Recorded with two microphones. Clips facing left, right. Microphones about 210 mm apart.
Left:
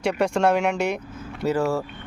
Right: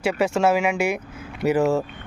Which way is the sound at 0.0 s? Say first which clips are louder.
Right 1 dB; 5° right (ahead or behind).